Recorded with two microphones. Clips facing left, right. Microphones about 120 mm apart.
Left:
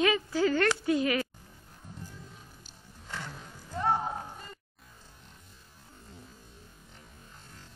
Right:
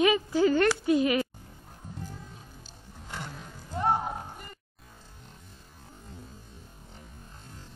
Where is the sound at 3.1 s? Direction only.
20° right (ahead or behind).